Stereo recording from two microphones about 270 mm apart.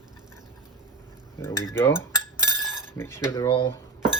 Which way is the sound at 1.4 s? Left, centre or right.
Centre.